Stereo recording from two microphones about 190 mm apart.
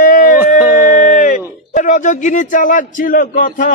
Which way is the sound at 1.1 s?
45° left (ahead or behind).